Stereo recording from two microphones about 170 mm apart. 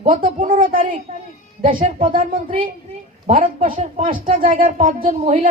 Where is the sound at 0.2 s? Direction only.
55° right (ahead or behind).